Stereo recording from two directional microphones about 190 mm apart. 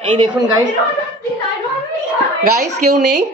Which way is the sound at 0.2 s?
25° right (ahead or behind).